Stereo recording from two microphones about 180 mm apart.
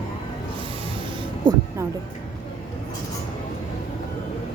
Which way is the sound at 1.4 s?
25° right (ahead or behind).